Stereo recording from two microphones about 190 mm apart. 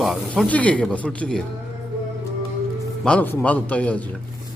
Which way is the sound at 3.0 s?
5° left (ahead or behind).